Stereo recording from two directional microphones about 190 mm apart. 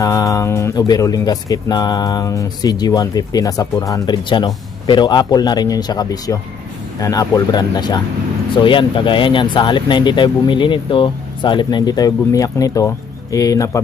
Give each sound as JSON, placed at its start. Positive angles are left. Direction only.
{"t": 0.0, "sound": "speech", "side_deg": 15}